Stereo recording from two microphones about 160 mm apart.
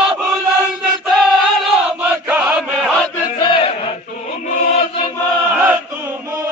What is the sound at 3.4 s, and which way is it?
Battle cry, 30° left (ahead or behind).